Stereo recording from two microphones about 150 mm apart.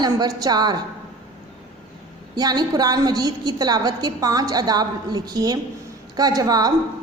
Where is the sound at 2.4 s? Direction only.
25° right (ahead or behind).